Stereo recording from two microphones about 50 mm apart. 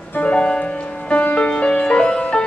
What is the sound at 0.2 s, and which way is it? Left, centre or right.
Music, left.